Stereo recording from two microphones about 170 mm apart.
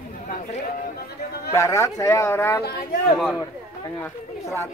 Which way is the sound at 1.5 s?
20° left (ahead or behind).